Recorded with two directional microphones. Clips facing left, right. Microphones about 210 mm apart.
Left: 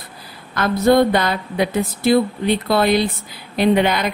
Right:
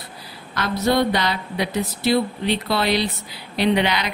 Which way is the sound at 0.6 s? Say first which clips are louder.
Left 6 dB; 50° left (ahead or behind).